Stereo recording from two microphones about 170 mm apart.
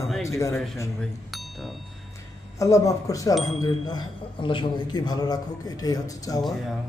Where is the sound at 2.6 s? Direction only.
20° left (ahead or behind).